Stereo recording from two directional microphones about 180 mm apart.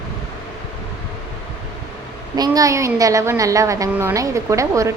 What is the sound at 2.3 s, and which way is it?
A woman's voice, 20° right (ahead or behind).